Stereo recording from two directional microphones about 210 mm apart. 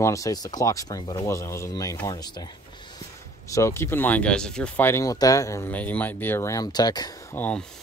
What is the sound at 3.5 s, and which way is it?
Speech, 15° left (ahead or behind).